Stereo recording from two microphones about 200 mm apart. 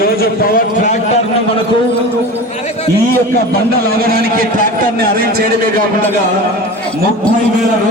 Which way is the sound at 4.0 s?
50° right (ahead or behind).